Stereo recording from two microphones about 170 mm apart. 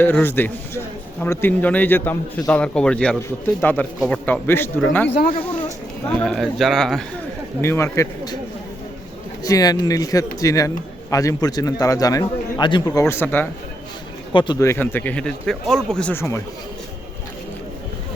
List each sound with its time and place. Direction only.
0.0 s a man's voice: 10° left (ahead or behind)
6.1 s speech: 5° left (ahead or behind)
7.6 s a man's voice: 15° left (ahead or behind)
9.4 s a man's voice: 20° left (ahead or behind)
14.3 s a man's voice: 25° left (ahead or behind)